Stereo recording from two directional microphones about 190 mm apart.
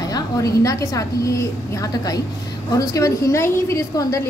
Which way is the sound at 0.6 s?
15° left (ahead or behind).